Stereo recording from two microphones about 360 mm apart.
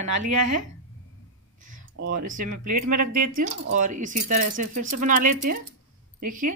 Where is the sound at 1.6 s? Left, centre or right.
Right.